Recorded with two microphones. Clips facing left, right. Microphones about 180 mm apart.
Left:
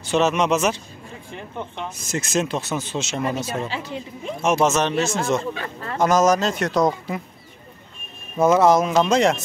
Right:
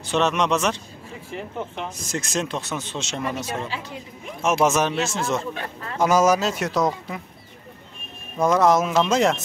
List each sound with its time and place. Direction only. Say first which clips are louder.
0.0 s speech: left 2 dB; centre (ahead or behind)
3.3 s speech: left 3 dB; 25° left (ahead or behind)
4.4 s speech: left 1 dB; centre (ahead or behind)
8.4 s speech: left 2 dB; 5° left (ahead or behind)